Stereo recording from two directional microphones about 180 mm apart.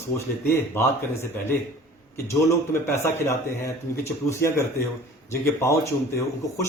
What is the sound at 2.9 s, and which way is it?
Speech, 15° left (ahead or behind).